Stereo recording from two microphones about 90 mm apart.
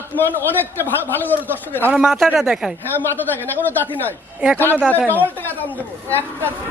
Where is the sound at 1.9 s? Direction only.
10° right (ahead or behind).